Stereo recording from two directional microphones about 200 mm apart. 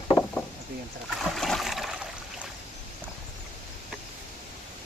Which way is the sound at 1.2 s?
Centre (ahead or behind).